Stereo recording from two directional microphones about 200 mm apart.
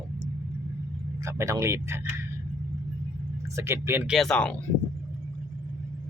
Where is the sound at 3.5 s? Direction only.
15° right (ahead or behind).